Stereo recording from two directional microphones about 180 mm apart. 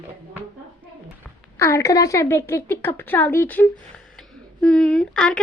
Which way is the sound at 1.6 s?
15° left (ahead or behind).